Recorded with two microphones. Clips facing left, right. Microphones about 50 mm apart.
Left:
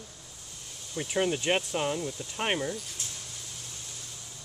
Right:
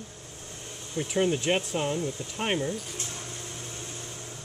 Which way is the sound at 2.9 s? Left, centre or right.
Right.